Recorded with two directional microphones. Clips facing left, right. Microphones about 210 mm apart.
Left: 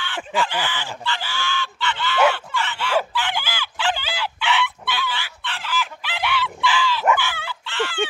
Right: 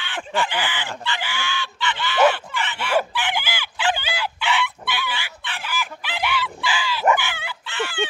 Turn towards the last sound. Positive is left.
turn(degrees=-15)  # may be behind; listen again after turning